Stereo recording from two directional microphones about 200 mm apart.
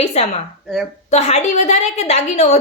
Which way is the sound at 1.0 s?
35° left (ahead or behind).